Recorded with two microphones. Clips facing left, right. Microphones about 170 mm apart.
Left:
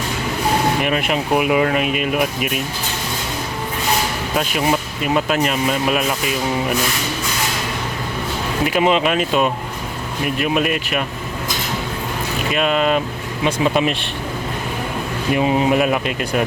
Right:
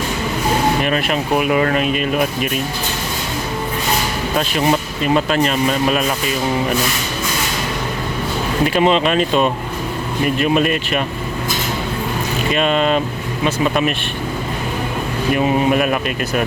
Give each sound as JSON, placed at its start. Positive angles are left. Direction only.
{"t": 0.8, "sound": "speech", "side_deg": 15}
{"t": 4.4, "sound": "speech", "side_deg": 5}
{"t": 8.6, "sound": "speech", "side_deg": 10}
{"t": 12.5, "sound": "speech", "side_deg": 5}
{"t": 13.4, "sound": "speech", "side_deg": 20}
{"t": 15.3, "sound": "speech", "side_deg": 20}